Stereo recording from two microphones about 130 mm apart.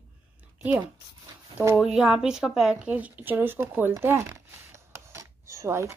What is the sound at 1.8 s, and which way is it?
Speech, 5° right (ahead or behind).